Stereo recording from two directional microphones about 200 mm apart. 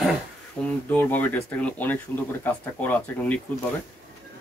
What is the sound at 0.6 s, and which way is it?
Speech, 5° left (ahead or behind).